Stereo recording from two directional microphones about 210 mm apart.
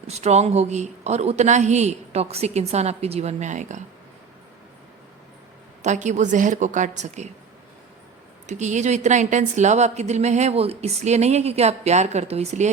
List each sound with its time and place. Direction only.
0.1 s a woman's voice: 30° right (ahead or behind)
5.8 s a woman's voice: 35° right (ahead or behind)
8.4 s a woman's voice: 35° right (ahead or behind)